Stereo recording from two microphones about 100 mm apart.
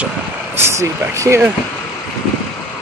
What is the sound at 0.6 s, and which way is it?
Speech, 30° right (ahead or behind).